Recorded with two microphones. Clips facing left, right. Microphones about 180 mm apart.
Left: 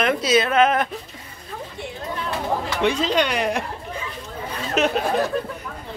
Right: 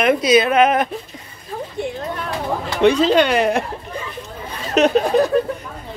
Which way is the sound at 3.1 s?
55° right (ahead or behind).